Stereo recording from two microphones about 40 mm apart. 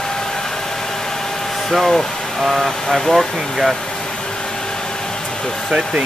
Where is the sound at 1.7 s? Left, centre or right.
Centre.